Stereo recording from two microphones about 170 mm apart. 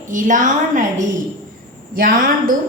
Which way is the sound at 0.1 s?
50° right (ahead or behind).